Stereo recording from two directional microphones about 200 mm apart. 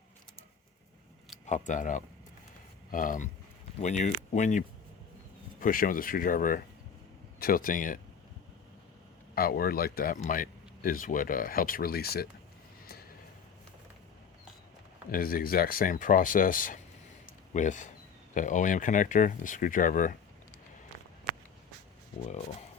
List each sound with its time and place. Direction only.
1.5 s speech: 40° left (ahead or behind)
9.3 s speech: 50° left (ahead or behind)
15.1 s speech: 45° left (ahead or behind)